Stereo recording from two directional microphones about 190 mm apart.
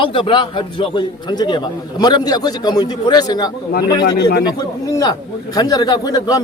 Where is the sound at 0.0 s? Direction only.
25° left (ahead or behind).